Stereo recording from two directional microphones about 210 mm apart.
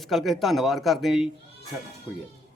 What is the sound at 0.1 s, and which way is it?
A man's voice, centre (ahead or behind).